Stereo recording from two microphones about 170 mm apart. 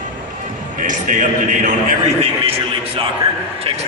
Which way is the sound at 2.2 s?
35° right (ahead or behind).